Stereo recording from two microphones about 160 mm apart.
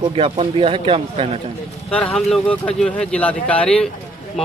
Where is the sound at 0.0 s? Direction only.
35° right (ahead or behind).